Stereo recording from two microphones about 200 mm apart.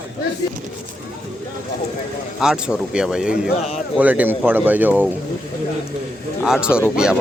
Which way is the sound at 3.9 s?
10° right (ahead or behind).